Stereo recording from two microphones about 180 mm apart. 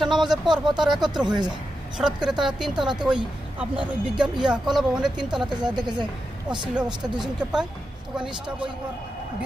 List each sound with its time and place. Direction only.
0.0 s speech: centre (ahead or behind)
5.4 s speech: 25° right (ahead or behind)
6.7 s speech: 5° right (ahead or behind)